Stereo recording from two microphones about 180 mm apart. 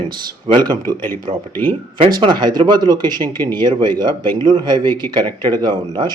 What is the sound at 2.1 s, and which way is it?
Speech, 25° right (ahead or behind).